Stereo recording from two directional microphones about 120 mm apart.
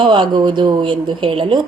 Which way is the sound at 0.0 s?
45° right (ahead or behind).